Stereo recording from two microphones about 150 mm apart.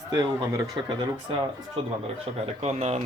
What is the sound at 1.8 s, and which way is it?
A man's voice, 40° right (ahead or behind).